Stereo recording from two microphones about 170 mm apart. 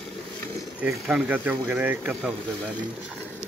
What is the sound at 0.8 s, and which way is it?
Speech, 5° right (ahead or behind).